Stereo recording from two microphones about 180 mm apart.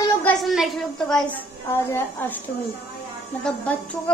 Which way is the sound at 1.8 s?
15° left (ahead or behind).